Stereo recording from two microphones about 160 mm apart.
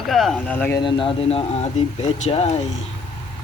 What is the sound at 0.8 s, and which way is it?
Speech, 30° left (ahead or behind).